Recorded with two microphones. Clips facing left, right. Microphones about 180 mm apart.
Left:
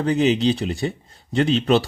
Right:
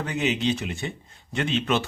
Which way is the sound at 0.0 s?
35° left (ahead or behind).